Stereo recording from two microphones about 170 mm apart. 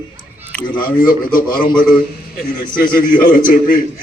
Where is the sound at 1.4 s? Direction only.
55° left (ahead or behind).